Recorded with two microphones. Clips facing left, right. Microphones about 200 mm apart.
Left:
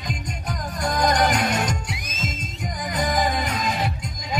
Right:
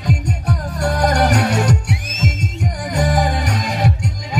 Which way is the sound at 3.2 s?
75° right (ahead or behind).